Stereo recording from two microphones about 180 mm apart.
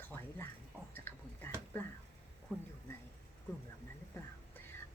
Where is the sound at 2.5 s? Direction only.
5° left (ahead or behind).